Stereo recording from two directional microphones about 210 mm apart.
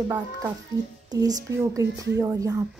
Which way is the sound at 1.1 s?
15° right (ahead or behind).